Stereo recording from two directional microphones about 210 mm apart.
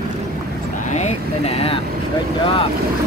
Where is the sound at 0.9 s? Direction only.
30° left (ahead or behind).